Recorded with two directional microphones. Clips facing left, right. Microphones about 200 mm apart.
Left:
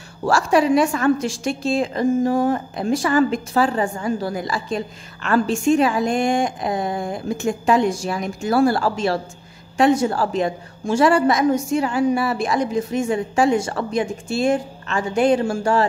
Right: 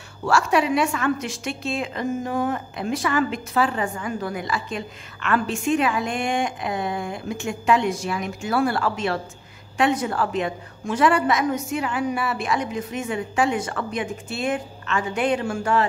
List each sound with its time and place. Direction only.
0.2 s a woman's voice: 35° left (ahead or behind)
10.0 s a woman's voice: 35° left (ahead or behind)